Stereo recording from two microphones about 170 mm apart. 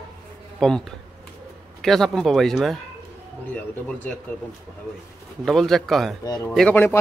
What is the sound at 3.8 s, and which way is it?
Speech, 5° left (ahead or behind).